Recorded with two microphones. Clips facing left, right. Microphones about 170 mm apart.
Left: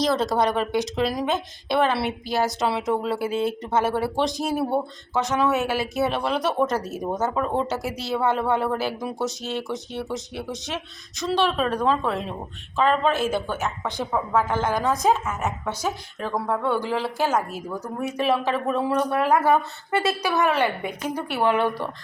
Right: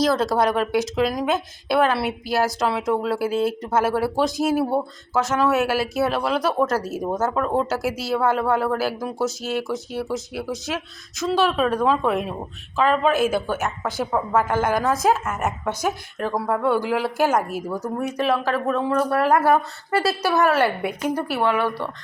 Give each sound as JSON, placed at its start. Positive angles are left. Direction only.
{"t": 0.0, "sound": "a woman's voice", "side_deg": 0}
{"t": 18.2, "sound": "speech", "side_deg": 0}
{"t": 20.6, "sound": "a woman's voice", "side_deg": -10}
{"t": 21.4, "sound": "speech", "side_deg": 20}